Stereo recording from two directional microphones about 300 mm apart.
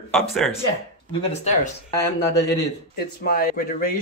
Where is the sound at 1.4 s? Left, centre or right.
Left.